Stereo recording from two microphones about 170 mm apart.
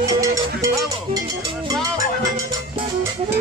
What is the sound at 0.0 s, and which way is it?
Music, 20° right (ahead or behind).